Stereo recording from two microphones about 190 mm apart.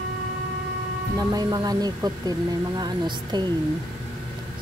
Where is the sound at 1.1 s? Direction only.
20° right (ahead or behind).